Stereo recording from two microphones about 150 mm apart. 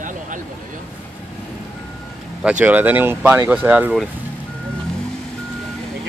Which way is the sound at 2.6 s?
10° right (ahead or behind).